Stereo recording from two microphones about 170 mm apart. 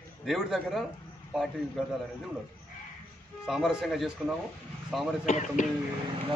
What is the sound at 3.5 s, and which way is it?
A man's voice, centre (ahead or behind).